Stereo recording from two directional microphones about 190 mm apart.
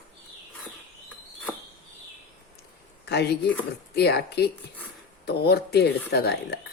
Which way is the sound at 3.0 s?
60° left (ahead or behind).